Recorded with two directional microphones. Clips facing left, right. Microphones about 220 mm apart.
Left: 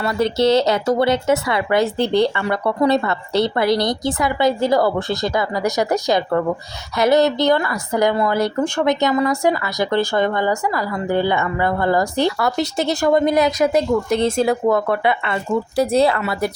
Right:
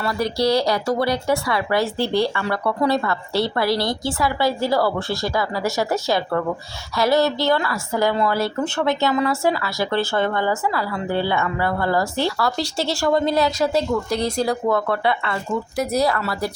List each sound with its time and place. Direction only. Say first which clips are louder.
0.0 s a woman's voice: left 4 dB; 25° left (ahead or behind)
15.7 s speech: left 5 dB; 30° left (ahead or behind)